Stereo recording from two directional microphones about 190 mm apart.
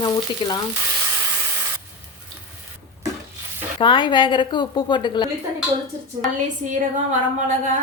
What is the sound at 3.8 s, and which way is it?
A woman's voice, 25° left (ahead or behind).